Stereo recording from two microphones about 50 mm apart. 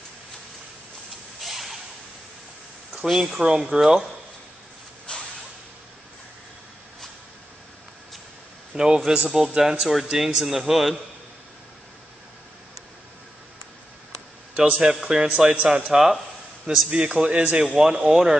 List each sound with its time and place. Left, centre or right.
1.4 s a sound: centre
3.1 s a man's voice: centre
8.7 s a man's voice: centre
14.7 s a man's voice: centre
15.2 s speech: right
15.9 s a man's voice: centre; by 17.6 s right
17.7 s a man's voice: centre